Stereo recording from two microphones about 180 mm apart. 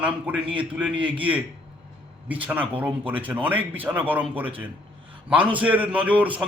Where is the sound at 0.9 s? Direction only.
30° right (ahead or behind).